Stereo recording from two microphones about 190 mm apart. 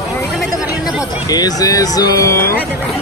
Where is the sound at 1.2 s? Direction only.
20° left (ahead or behind).